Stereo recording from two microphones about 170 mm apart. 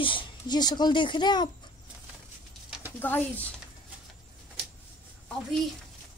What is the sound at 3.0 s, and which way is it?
Speech, 10° left (ahead or behind).